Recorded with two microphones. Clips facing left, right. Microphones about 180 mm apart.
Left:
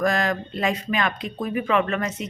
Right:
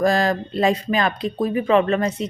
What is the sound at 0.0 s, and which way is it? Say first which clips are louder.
Speech: right 4 dB; 35° right (ahead or behind).